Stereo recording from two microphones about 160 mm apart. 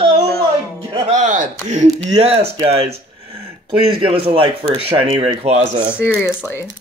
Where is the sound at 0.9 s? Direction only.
45° right (ahead or behind).